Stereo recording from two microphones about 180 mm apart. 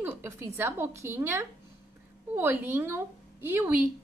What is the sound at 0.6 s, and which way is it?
A woman's voice, 10° right (ahead or behind).